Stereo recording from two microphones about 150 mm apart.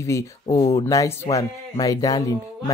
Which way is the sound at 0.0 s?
20° left (ahead or behind).